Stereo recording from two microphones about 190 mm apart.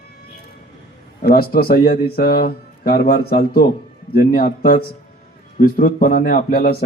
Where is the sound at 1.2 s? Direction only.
50° left (ahead or behind).